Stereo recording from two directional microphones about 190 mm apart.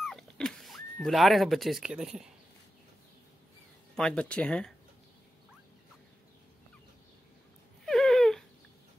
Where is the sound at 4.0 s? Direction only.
5° left (ahead or behind).